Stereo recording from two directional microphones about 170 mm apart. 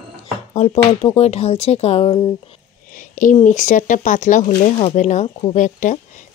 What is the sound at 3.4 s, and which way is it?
Speech, 50° left (ahead or behind).